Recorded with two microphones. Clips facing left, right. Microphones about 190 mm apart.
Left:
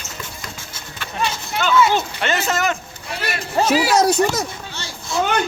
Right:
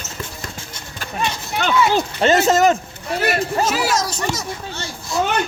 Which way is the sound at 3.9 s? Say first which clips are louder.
Left 6 dB; 60° left (ahead or behind).